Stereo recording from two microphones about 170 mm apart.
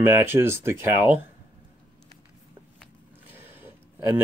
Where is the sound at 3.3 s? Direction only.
10° right (ahead or behind).